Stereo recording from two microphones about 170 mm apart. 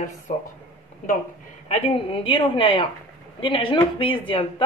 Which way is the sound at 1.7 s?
30° left (ahead or behind).